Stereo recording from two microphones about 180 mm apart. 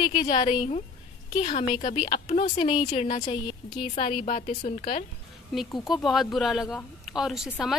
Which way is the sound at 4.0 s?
45° left (ahead or behind).